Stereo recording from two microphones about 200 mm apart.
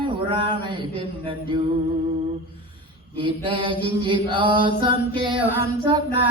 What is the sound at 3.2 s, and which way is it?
Mantra, 25° right (ahead or behind).